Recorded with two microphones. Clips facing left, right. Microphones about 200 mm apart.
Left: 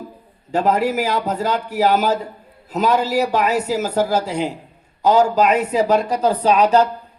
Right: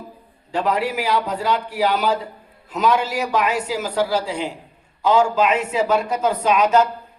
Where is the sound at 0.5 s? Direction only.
40° left (ahead or behind).